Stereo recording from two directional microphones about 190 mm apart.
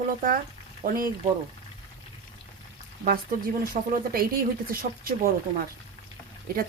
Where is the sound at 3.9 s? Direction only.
50° right (ahead or behind).